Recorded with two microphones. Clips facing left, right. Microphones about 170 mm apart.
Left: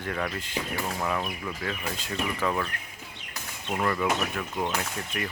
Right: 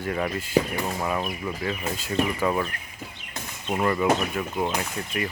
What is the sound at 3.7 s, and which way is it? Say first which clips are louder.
Speech: right 4 dB; 10° right (ahead or behind).